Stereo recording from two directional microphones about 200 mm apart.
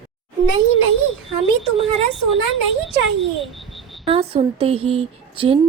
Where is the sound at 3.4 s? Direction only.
Centre (ahead or behind).